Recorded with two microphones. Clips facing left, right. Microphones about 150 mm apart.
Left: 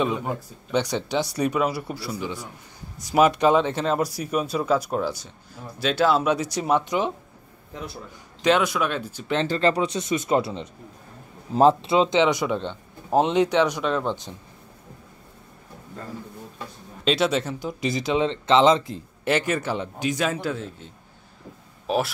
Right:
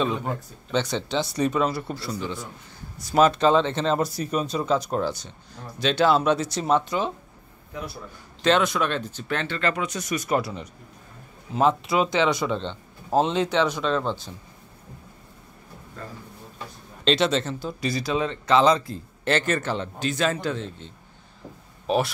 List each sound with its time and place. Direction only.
0.0 s speech: 15° left (ahead or behind)
8.4 s speech: 10° left (ahead or behind)
9.5 s speech: 30° left (ahead or behind); by 14.3 s 15° left (ahead or behind)
17.0 s speech: 10° left (ahead or behind)